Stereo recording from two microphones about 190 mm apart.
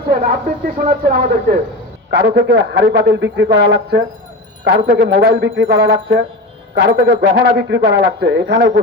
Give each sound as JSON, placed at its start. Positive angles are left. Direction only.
{"t": 0.1, "sound": "a man's voice", "side_deg": -55}